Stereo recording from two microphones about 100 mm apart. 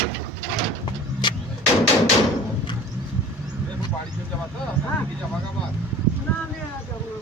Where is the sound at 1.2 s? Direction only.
50° left (ahead or behind).